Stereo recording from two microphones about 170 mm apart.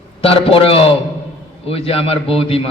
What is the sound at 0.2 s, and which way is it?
A man's voice, 35° left (ahead or behind).